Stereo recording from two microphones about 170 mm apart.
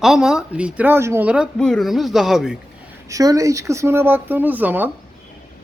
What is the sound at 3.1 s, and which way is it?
Speech, 20° right (ahead or behind).